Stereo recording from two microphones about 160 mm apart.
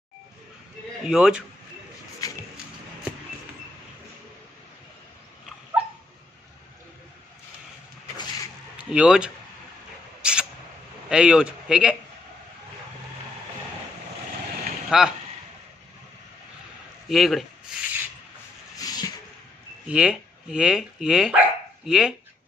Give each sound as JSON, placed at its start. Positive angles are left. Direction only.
{"t": 1.0, "sound": "speech", "side_deg": -5}
{"t": 2.2, "sound": "a sound", "side_deg": 20}
{"t": 8.9, "sound": "speech", "side_deg": -5}
{"t": 10.2, "sound": "a sound", "side_deg": -5}
{"t": 11.1, "sound": "speech", "side_deg": -5}
{"t": 14.9, "sound": "speech", "side_deg": -5}
{"t": 17.1, "sound": "speech", "side_deg": 0}
{"t": 18.8, "sound": "a sound", "side_deg": 25}
{"t": 19.9, "sound": "speech", "side_deg": -5}